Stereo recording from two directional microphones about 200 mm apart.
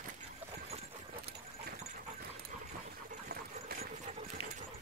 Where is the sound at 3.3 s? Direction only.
45° right (ahead or behind).